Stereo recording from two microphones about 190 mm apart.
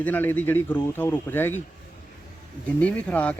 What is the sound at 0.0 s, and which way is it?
Speech, 10° left (ahead or behind).